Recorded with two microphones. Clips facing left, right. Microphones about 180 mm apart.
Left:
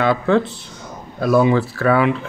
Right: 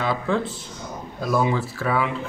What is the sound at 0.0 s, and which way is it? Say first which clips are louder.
Speech: left 7 dB; 65° left (ahead or behind).